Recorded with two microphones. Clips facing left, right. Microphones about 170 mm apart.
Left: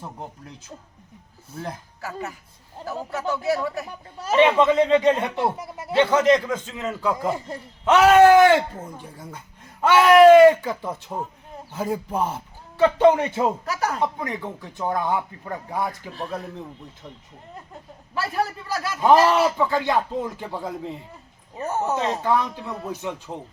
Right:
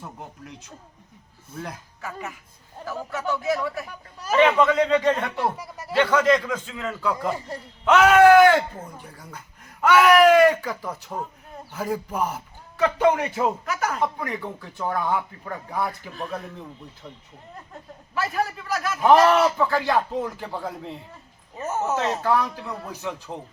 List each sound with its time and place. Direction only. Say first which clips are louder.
1.5 s a man's voice: left 2 dB; 30° left (ahead or behind)
14.0 s a man's voice: left 1 dB; 20° left (ahead or behind)
18.1 s a man's voice: even; 30° left (ahead or behind)
19.5 s a man's voice: even; 15° left (ahead or behind)
21.6 s a man's voice: left 1 dB; 30° left (ahead or behind)
22.0 s a man's voice: even; 20° left (ahead or behind)